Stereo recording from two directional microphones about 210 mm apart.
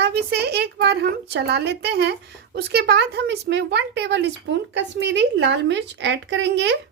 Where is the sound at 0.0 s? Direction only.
50° right (ahead or behind).